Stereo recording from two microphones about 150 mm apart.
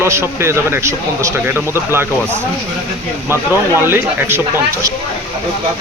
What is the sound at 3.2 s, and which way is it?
Speech, 15° right (ahead or behind).